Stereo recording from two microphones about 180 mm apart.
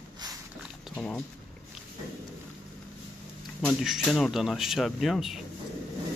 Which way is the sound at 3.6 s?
Centre (ahead or behind).